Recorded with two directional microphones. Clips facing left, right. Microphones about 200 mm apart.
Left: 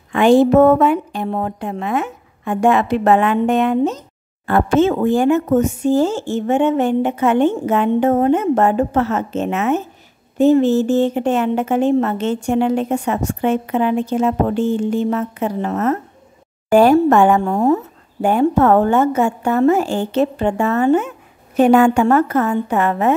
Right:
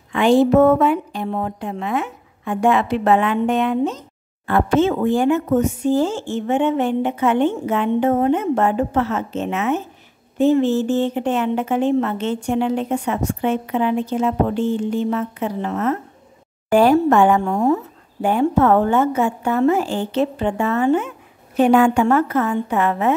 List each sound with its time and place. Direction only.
0.1 s a woman's voice: 50° left (ahead or behind)
18.2 s a woman's voice: 45° left (ahead or behind)